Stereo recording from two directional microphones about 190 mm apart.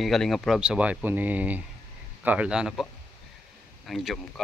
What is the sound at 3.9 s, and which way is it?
Speech, centre (ahead or behind).